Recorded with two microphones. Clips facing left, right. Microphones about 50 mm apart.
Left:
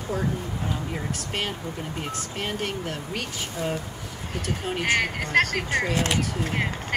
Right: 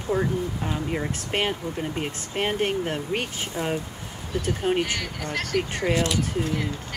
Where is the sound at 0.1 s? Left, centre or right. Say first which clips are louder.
Right 3 dB; right.